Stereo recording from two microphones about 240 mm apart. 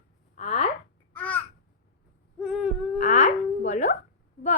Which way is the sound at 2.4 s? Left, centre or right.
Centre.